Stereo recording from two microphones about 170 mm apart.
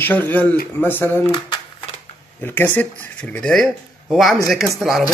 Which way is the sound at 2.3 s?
15° left (ahead or behind).